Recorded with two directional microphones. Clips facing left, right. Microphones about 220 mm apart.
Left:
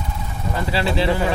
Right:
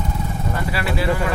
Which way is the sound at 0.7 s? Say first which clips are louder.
Left 3 dB; 25° left (ahead or behind).